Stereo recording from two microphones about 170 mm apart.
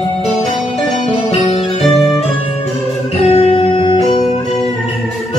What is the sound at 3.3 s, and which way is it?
Music, 35° left (ahead or behind).